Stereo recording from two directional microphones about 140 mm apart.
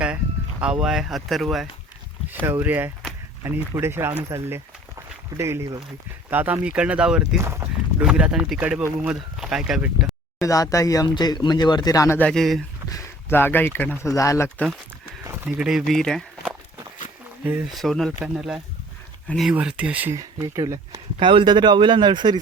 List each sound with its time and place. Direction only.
0.6 s speech: 5° right (ahead or behind)
2.5 s speech: 15° right (ahead or behind)
7.4 s speech: 15° right (ahead or behind)
8.0 s speech: 5° right (ahead or behind)
10.4 s speech: 25° left (ahead or behind)
12.3 s speech: centre (ahead or behind)
12.9 s speech: 15° left (ahead or behind)
15.4 s speech: 5° right (ahead or behind)
17.7 s speech: centre (ahead or behind)
20.1 s speech: 25° right (ahead or behind)